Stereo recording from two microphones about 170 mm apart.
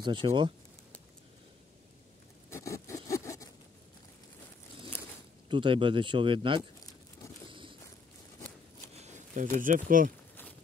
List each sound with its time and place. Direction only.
0.0 s speech: 30° right (ahead or behind)
2.5 s zipper: 15° left (ahead or behind)
5.5 s speech: 30° right (ahead or behind)
7.4 s a sound: 30° right (ahead or behind)
8.4 s a sound: 15° left (ahead or behind)
8.9 s speech: 45° right (ahead or behind)